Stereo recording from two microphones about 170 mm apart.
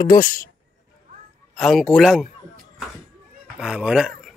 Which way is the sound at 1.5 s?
Centre (ahead or behind).